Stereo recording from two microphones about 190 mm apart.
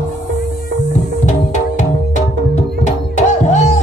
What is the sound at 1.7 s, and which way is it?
Music, 40° left (ahead or behind).